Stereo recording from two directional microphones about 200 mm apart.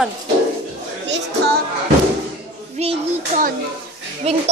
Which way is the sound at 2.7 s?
35° right (ahead or behind).